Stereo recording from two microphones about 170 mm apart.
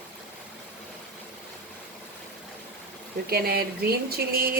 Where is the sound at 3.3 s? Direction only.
65° right (ahead or behind).